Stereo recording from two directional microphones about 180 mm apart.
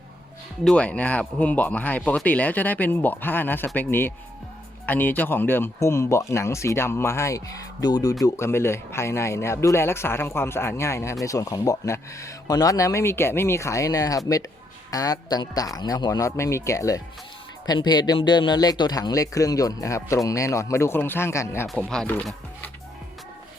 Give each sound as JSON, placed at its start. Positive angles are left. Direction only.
{"t": 0.6, "sound": "speech", "side_deg": 5}
{"t": 21.7, "sound": "speech", "side_deg": 5}